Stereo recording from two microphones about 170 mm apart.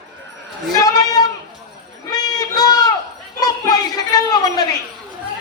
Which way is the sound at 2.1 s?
25° left (ahead or behind).